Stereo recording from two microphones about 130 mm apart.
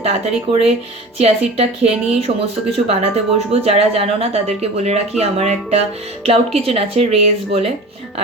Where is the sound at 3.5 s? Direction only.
50° right (ahead or behind).